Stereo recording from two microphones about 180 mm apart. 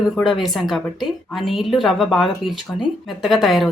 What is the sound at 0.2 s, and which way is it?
Speech, centre (ahead or behind).